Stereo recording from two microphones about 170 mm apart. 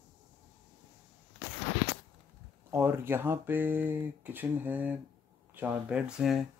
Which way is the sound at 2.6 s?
15° right (ahead or behind).